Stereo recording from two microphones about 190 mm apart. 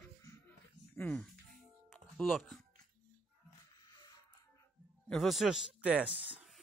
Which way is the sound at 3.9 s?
20° left (ahead or behind).